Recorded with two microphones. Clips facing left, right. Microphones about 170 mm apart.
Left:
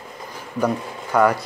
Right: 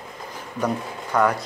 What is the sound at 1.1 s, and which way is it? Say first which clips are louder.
Speech: left 3 dB; centre (ahead or behind).